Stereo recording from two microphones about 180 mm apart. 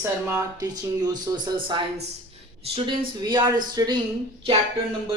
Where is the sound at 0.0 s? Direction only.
15° right (ahead or behind).